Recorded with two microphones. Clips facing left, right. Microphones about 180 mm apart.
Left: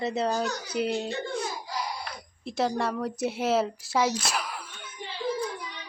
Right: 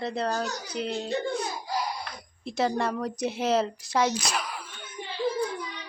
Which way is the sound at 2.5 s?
Centre (ahead or behind).